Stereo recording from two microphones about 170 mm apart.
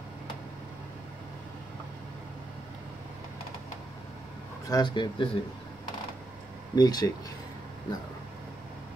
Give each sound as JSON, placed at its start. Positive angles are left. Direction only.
{"t": 4.6, "sound": "speech", "side_deg": 25}
{"t": 6.7, "sound": "speech", "side_deg": 25}